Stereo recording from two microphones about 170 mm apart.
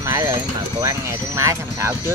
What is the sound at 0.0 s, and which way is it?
Speech, 15° right (ahead or behind).